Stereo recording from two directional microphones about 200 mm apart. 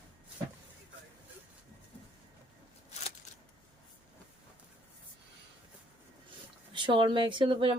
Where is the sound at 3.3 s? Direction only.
35° left (ahead or behind).